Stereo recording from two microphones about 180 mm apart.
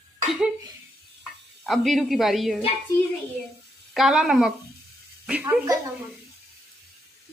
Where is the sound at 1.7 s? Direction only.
Centre (ahead or behind).